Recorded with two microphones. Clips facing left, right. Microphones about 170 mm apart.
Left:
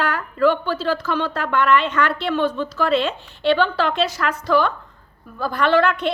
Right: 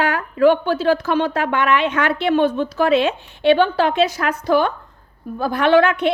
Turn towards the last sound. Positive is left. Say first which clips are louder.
# right 3 dB
turn(degrees=-60)  # may be behind; listen again after turning